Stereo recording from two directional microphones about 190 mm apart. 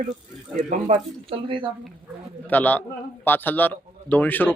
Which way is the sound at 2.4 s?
10° left (ahead or behind).